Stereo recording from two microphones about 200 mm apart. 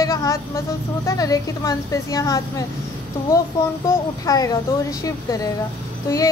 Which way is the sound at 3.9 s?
15° left (ahead or behind).